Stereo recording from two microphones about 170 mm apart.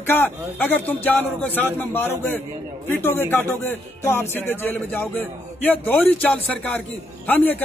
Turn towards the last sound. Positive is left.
turn(degrees=10)  # may be behind; listen again after turning